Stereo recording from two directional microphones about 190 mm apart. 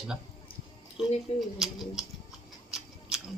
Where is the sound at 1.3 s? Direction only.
35° left (ahead or behind).